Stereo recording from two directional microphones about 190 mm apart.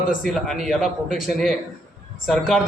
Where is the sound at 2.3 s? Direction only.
Centre (ahead or behind).